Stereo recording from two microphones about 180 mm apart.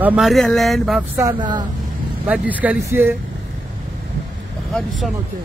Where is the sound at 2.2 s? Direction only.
10° right (ahead or behind).